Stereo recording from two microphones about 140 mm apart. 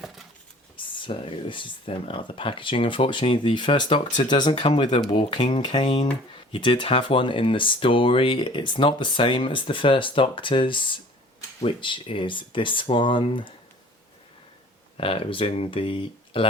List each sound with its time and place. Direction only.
0.8 s speech: 40° left (ahead or behind)
14.9 s speech: 40° left (ahead or behind)